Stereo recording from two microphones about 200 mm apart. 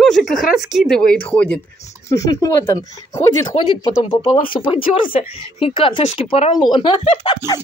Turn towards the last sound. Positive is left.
turn(degrees=20)  # may be behind; listen again after turning